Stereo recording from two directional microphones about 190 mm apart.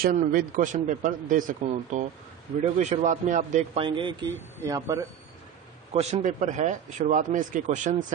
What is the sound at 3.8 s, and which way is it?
Speech, 25° right (ahead or behind).